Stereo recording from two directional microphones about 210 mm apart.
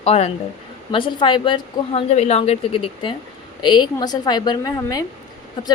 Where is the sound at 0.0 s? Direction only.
30° left (ahead or behind).